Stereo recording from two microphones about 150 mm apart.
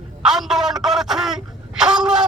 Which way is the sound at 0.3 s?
5° right (ahead or behind).